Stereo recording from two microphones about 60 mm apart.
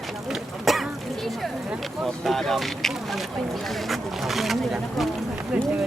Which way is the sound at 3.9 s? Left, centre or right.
Centre.